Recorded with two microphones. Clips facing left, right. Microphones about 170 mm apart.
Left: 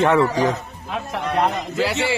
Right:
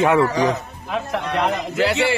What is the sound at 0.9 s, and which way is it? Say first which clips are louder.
Speech: even; 65° right (ahead or behind).